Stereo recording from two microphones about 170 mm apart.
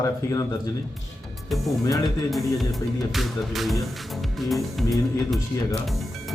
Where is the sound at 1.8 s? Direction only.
20° left (ahead or behind).